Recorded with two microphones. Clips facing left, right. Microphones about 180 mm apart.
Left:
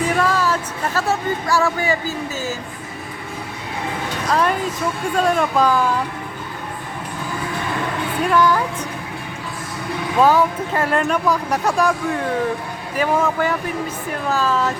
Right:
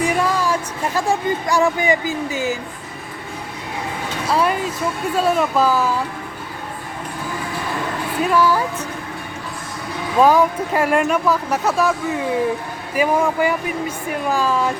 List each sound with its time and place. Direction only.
0.0 s speech: 15° right (ahead or behind)
4.3 s speech: 10° right (ahead or behind)
8.2 s speech: 5° right (ahead or behind)
10.2 s speech: 10° right (ahead or behind)